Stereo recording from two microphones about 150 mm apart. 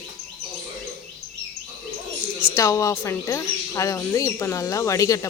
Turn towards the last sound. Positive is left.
turn(degrees=20)  # may be behind; listen again after turning